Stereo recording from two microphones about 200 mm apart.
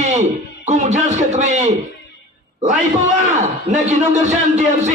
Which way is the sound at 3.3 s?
35° right (ahead or behind).